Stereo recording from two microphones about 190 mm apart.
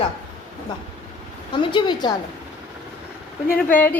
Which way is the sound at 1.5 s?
25° left (ahead or behind).